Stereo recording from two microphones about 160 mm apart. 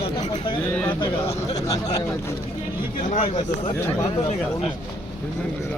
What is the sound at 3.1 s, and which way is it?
Speech, 45° left (ahead or behind).